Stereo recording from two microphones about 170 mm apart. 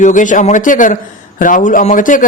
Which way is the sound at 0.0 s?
50° left (ahead or behind).